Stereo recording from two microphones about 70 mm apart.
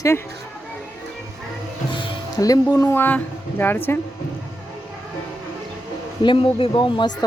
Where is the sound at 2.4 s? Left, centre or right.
Left.